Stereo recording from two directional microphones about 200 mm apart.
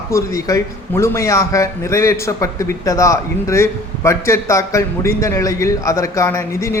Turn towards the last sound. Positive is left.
turn(degrees=15)  # may be behind; listen again after turning